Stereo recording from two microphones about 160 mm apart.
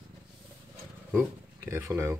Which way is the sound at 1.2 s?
15° right (ahead or behind).